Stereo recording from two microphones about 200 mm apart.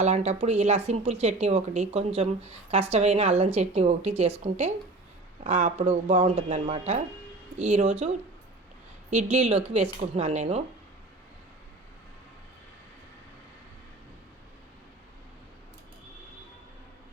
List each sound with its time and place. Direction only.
0.0 s speech: 35° right (ahead or behind)